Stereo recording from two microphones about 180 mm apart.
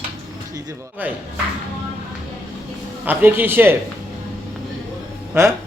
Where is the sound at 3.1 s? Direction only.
10° right (ahead or behind).